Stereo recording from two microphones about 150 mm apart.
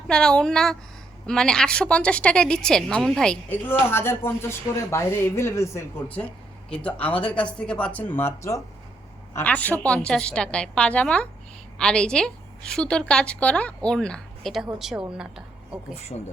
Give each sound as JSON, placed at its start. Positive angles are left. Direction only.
{"t": 0.1, "sound": "a woman's voice", "side_deg": 5}